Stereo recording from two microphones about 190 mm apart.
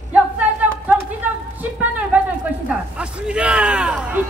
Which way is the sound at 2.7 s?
5° right (ahead or behind).